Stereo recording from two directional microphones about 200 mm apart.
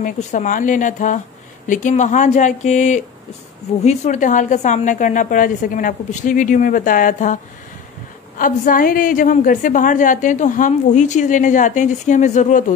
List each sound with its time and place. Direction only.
0.0 s a woman's voice: 40° left (ahead or behind)
8.4 s a woman's voice: 45° left (ahead or behind)